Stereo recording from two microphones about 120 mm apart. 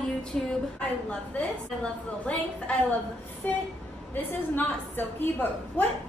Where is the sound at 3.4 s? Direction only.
10° left (ahead or behind).